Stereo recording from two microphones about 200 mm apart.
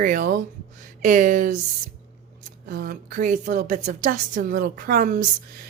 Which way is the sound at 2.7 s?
45° right (ahead or behind).